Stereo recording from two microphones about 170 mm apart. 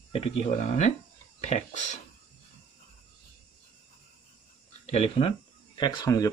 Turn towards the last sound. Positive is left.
turn(degrees=20)  # may be behind; listen again after turning